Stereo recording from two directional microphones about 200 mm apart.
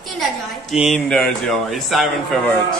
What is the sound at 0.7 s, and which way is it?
Speech, centre (ahead or behind).